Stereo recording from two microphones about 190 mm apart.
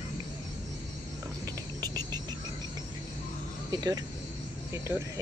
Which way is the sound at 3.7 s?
20° right (ahead or behind).